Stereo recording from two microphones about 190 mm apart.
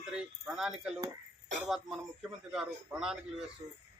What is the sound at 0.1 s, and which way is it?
Speech, 5° right (ahead or behind).